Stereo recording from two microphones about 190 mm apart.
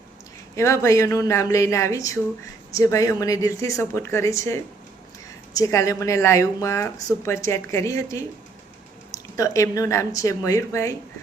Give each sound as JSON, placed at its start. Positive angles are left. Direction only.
{"t": 0.5, "sound": "a woman's voice", "side_deg": 15}
{"t": 9.3, "sound": "a woman's voice", "side_deg": 15}